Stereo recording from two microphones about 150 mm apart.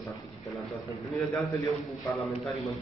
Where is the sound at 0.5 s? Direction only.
Centre (ahead or behind).